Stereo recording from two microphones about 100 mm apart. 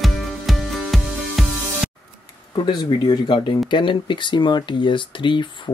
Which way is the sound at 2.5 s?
50° left (ahead or behind).